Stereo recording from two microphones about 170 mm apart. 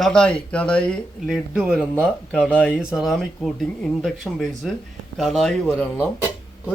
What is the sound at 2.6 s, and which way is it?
Speech, 5° right (ahead or behind).